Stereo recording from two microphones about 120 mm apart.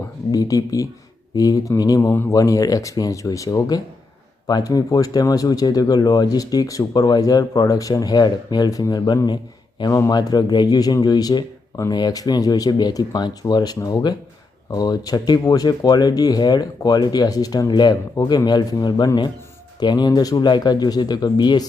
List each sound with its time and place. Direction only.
0.3 s speech: 30° left (ahead or behind)